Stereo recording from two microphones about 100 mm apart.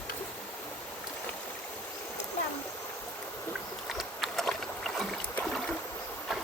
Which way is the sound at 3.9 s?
Centre (ahead or behind).